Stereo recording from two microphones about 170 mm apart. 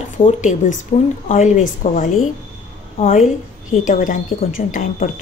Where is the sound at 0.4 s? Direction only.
45° left (ahead or behind).